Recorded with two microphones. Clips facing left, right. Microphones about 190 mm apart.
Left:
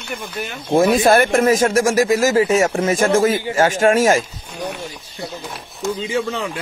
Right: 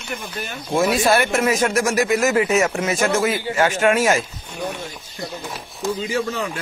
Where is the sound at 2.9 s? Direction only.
50° left (ahead or behind).